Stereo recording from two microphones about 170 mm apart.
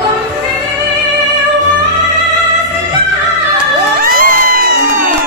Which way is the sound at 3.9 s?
55° right (ahead or behind).